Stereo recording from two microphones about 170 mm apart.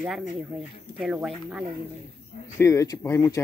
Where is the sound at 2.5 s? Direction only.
15° left (ahead or behind).